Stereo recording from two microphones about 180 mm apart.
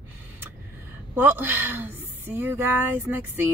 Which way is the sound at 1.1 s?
10° right (ahead or behind).